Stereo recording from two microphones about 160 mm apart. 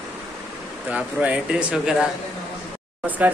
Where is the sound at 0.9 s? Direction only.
10° right (ahead or behind).